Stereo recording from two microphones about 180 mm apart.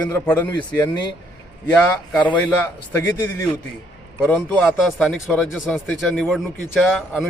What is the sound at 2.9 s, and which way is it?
Speech, 15° left (ahead or behind).